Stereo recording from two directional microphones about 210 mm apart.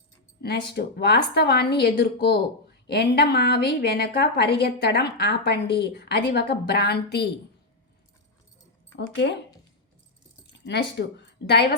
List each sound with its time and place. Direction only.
0.7 s a woman's voice: 50° left (ahead or behind)
9.0 s speech: 55° left (ahead or behind)
10.4 s speech: 55° left (ahead or behind)